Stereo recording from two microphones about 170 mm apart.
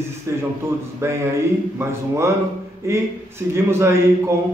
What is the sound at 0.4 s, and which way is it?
Speech, 15° right (ahead or behind).